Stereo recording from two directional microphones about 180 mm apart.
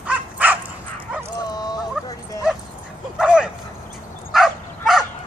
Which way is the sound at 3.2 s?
5° right (ahead or behind).